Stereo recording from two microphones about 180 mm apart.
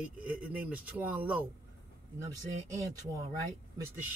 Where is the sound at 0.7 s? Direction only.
10° right (ahead or behind).